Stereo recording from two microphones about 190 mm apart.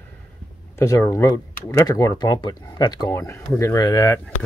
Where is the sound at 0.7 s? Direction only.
15° left (ahead or behind).